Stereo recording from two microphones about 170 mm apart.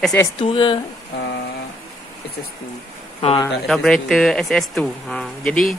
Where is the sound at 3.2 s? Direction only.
35° left (ahead or behind).